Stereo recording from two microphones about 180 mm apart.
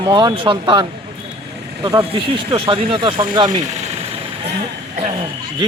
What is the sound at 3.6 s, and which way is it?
Vehicle, 40° right (ahead or behind).